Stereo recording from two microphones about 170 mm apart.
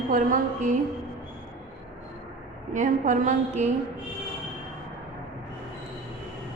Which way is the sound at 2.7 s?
50° right (ahead or behind).